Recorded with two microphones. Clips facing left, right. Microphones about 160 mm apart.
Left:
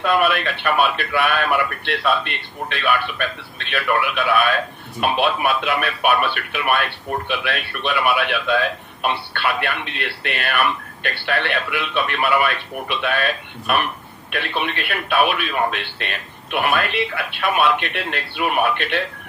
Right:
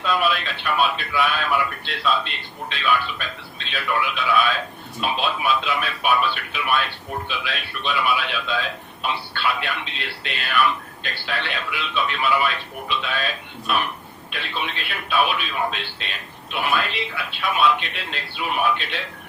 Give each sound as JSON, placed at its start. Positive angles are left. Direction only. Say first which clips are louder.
{"t": 0.0, "sound": "speech", "louder": "left 4 dB", "side_deg": 60}